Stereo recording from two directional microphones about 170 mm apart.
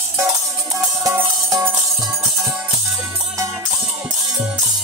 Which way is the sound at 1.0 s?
20° right (ahead or behind).